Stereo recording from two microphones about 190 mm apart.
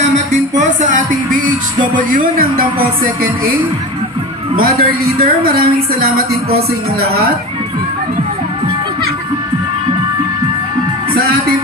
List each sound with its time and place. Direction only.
0.3 s music: 40° right (ahead or behind)
3.0 s a woman's voice: 50° right (ahead or behind)